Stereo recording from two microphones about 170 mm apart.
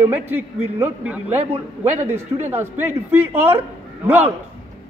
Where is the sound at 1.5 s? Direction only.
40° right (ahead or behind).